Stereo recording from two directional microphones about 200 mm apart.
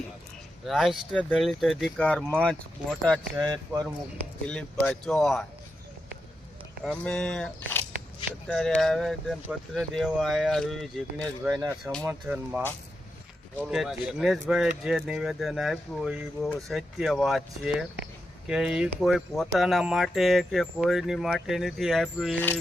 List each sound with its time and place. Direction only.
0.6 s speech: centre (ahead or behind)
3.4 s speech: 20° right (ahead or behind)
4.4 s speech: 5° left (ahead or behind)
6.8 s speech: 5° left (ahead or behind)
12.0 s speech: 10° right (ahead or behind); by 22.6 s 10° left (ahead or behind)